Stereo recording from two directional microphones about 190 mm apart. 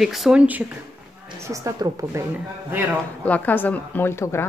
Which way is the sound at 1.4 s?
15° right (ahead or behind).